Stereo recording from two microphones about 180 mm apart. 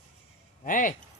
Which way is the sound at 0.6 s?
50° left (ahead or behind).